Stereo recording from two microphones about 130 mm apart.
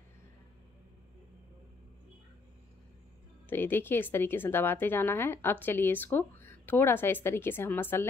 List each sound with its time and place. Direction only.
3.4 s a woman's voice: 15° left (ahead or behind)